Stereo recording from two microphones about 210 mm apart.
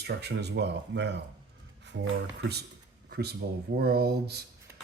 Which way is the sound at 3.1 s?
50° right (ahead or behind).